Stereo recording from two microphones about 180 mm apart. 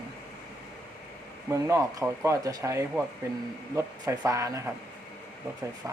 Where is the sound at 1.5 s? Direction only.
15° right (ahead or behind).